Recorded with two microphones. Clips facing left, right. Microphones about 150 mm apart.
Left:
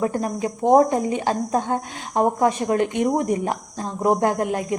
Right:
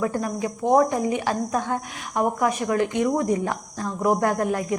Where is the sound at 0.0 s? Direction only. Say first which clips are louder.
Left 2 dB; 25° left (ahead or behind).